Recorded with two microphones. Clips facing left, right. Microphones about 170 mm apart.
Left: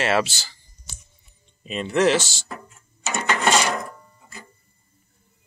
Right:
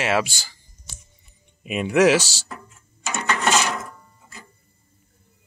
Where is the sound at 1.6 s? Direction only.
10° right (ahead or behind).